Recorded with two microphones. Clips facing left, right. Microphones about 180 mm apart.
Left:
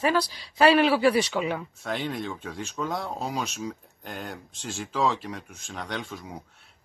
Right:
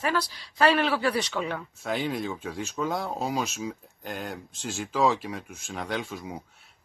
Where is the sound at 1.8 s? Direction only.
5° right (ahead or behind).